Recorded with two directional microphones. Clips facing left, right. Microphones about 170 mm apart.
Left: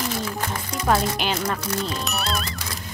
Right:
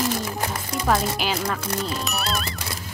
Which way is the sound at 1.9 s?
Centre (ahead or behind).